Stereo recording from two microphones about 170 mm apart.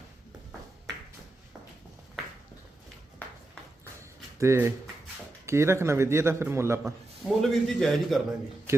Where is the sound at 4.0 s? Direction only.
15° right (ahead or behind).